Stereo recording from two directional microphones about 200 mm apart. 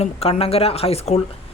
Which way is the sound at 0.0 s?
30° left (ahead or behind).